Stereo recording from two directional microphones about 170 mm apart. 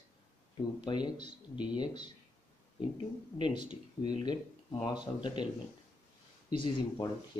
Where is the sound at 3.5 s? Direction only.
40° right (ahead or behind).